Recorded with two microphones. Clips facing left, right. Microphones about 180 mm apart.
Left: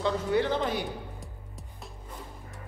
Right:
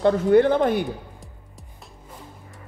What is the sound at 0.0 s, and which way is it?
Speech, 55° right (ahead or behind).